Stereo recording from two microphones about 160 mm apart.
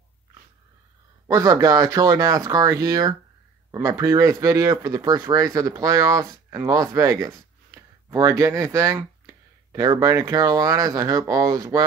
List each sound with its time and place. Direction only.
1.2 s speech: 20° right (ahead or behind)